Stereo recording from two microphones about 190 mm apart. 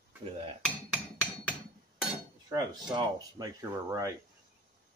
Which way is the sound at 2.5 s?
20° right (ahead or behind).